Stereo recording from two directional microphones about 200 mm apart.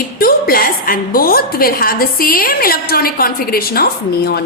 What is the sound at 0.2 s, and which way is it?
A woman's voice, 50° left (ahead or behind).